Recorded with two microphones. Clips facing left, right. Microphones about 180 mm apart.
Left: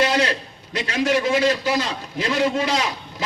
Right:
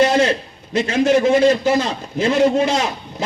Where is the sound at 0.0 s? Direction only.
45° right (ahead or behind).